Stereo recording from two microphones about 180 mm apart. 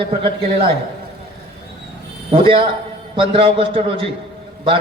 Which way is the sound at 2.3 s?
30° right (ahead or behind).